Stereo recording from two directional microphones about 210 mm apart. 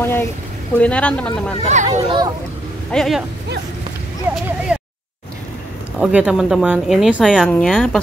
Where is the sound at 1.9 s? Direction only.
20° right (ahead or behind).